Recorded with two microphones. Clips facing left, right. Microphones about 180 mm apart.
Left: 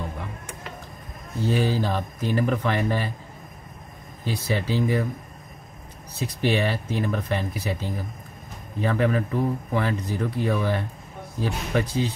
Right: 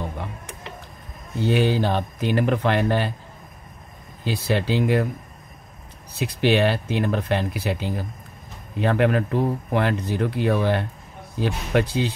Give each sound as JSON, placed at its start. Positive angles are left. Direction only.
{"t": 1.4, "sound": "speech", "side_deg": -70}
{"t": 4.2, "sound": "speech", "side_deg": -75}
{"t": 6.1, "sound": "speech", "side_deg": -70}